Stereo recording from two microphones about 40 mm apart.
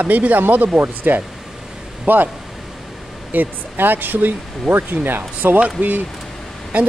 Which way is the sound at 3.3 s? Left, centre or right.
Right.